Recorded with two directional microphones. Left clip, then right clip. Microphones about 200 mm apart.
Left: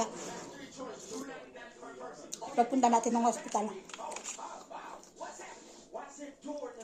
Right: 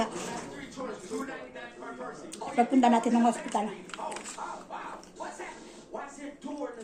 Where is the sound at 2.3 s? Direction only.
Centre (ahead or behind).